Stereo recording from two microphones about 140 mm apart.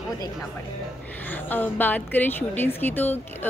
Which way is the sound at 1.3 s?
15° left (ahead or behind).